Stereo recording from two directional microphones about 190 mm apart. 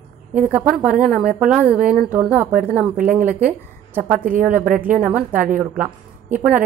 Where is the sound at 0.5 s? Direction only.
5° right (ahead or behind).